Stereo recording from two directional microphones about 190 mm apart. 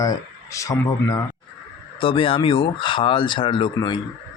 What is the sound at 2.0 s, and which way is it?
Speech, 30° left (ahead or behind).